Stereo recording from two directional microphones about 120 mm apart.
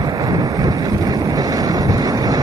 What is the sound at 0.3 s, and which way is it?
Boat, 35° right (ahead or behind).